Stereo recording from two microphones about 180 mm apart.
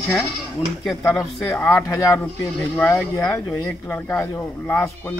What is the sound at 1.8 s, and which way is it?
Speech, 15° left (ahead or behind).